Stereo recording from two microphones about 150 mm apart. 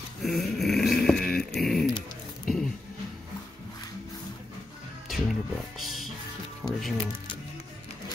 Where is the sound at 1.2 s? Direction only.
85° left.